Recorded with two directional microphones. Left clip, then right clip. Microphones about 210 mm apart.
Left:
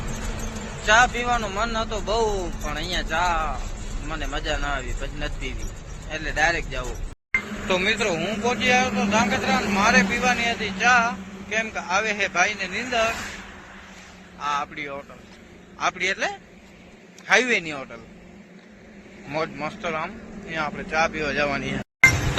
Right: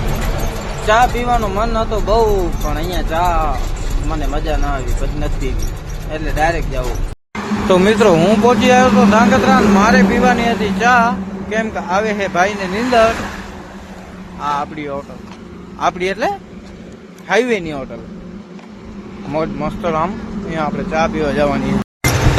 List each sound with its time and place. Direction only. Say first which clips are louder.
0.9 s speech: right 5 dB; centre (ahead or behind)
7.7 s speech: right 11 dB; 25° right (ahead or behind)
14.6 s a man's voice: right 8 dB; 5° right (ahead or behind)
19.3 s speech: right 8 dB; centre (ahead or behind)
19.8 s a man's voice: right 11 dB; 15° right (ahead or behind)
20.5 s speech: right 7 dB; 5° right (ahead or behind)